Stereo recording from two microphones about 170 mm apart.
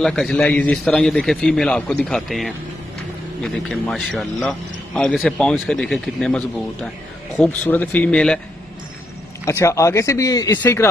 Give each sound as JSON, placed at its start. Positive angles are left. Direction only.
{"t": 0.0, "sound": "a man's voice", "side_deg": 5}
{"t": 9.4, "sound": "speech", "side_deg": 15}